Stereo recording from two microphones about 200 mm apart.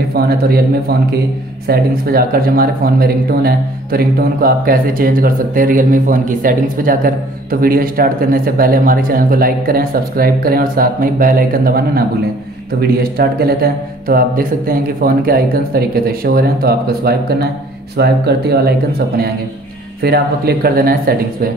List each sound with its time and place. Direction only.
0.1 s speech: 50° right (ahead or behind)